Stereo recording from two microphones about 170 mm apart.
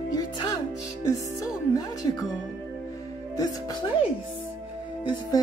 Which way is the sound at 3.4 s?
20° left (ahead or behind).